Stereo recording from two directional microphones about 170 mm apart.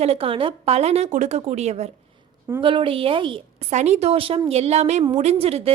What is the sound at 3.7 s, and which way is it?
A woman's voice, 40° right (ahead or behind).